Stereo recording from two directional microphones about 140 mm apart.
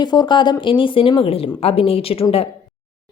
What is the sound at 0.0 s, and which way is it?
Speech, 30° left (ahead or behind).